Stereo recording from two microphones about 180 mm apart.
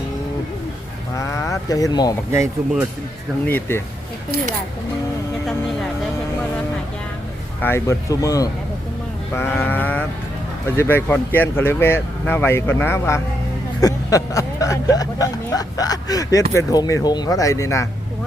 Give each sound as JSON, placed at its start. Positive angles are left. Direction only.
{"t": 1.1, "sound": "a sound", "side_deg": 15}
{"t": 2.3, "sound": "speech", "side_deg": -15}
{"t": 3.4, "sound": "speech", "side_deg": 10}
{"t": 7.6, "sound": "speech", "side_deg": 15}